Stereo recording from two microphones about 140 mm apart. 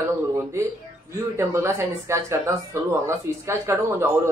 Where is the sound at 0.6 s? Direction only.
20° right (ahead or behind).